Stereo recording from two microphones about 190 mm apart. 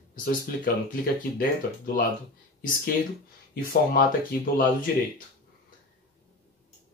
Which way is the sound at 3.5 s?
50° left (ahead or behind).